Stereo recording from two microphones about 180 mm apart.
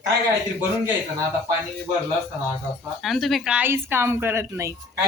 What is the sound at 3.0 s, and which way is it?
A woman's voice, centre (ahead or behind).